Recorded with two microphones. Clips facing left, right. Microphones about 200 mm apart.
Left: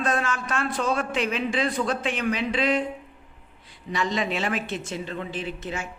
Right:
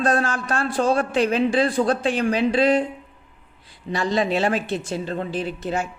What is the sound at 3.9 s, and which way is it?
Speech, 35° right (ahead or behind).